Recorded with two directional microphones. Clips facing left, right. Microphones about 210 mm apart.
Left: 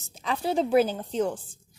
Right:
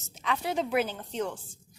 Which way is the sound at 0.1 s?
35° left (ahead or behind).